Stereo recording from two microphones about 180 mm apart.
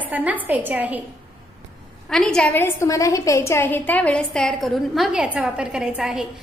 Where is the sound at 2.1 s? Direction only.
5° left (ahead or behind).